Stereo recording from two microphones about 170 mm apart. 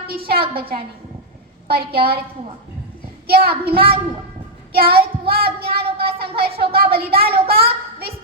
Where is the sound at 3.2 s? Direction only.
65° right (ahead or behind).